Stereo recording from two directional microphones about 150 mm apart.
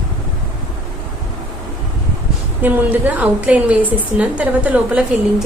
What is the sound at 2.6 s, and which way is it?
A woman's voice, 10° right (ahead or behind).